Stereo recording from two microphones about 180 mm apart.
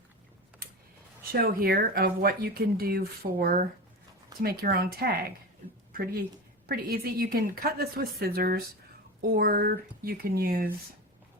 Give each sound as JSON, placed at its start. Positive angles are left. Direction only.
{"t": 1.3, "sound": "speech", "side_deg": -55}
{"t": 6.7, "sound": "speech", "side_deg": -55}